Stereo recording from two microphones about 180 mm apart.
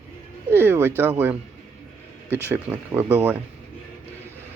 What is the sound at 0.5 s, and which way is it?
Speech, 10° right (ahead or behind).